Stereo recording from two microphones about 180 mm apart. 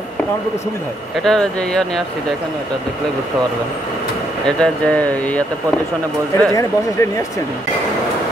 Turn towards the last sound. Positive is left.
turn(degrees=15)  # may be behind; listen again after turning